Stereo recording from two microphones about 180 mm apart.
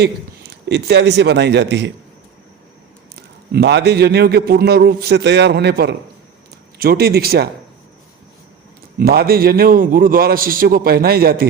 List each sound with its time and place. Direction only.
0.5 s speech: 65° right (ahead or behind)
3.5 s a man's voice: 70° right (ahead or behind)
9.0 s a man's voice: 60° right (ahead or behind)